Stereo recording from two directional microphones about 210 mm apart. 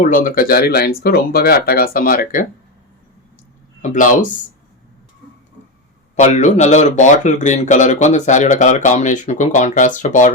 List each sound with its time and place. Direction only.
0.0 s speech: 40° left (ahead or behind)
3.8 s speech: 35° left (ahead or behind)
6.1 s speech: 35° left (ahead or behind)